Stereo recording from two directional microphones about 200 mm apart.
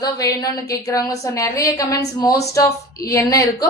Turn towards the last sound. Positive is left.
turn(degrees=15)  # may be behind; listen again after turning